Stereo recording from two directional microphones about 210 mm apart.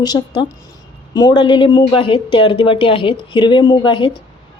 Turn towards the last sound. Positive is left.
turn(degrees=20)  # may be behind; listen again after turning